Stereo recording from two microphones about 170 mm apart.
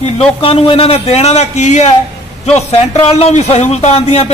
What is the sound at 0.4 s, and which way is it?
A man's voice, 35° left (ahead or behind).